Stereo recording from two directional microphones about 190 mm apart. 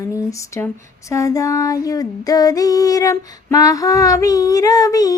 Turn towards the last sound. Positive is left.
turn(degrees=20)  # may be behind; listen again after turning